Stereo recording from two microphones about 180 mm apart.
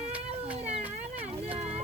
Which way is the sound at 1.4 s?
30° right (ahead or behind).